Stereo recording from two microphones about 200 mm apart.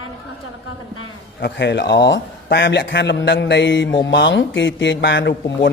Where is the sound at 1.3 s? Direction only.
60° left (ahead or behind).